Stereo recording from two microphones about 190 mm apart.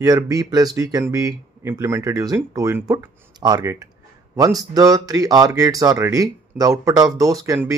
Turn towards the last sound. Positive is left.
turn(degrees=-20)  # may be behind; listen again after turning